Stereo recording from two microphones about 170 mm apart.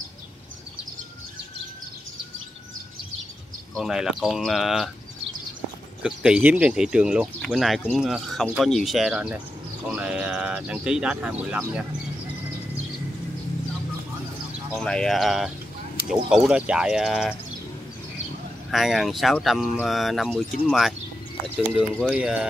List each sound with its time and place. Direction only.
3.7 s speech: 5° right (ahead or behind)
6.0 s speech: 5° right (ahead or behind)
14.7 s speech: 5° left (ahead or behind)
18.7 s speech: centre (ahead or behind)
22.1 s speech: 5° right (ahead or behind)